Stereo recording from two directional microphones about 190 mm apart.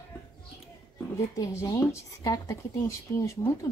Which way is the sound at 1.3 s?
15° left (ahead or behind).